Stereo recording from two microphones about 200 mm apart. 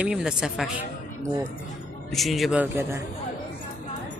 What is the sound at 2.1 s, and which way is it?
Speech, centre (ahead or behind).